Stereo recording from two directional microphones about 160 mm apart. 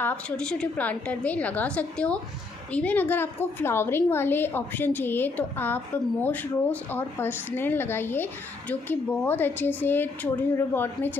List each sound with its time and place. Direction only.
0.0 s speech: 5° left (ahead or behind)